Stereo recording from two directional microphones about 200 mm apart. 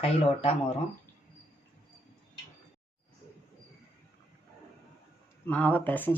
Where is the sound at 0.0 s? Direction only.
30° left (ahead or behind).